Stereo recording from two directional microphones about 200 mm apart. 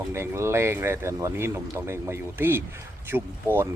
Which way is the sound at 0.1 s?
15° right (ahead or behind).